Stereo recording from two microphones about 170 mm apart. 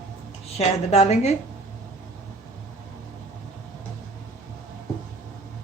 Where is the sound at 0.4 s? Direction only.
40° left (ahead or behind).